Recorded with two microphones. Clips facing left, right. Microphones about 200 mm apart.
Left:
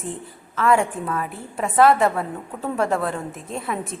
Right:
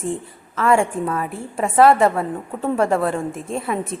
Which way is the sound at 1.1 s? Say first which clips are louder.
Right 3 dB; centre (ahead or behind).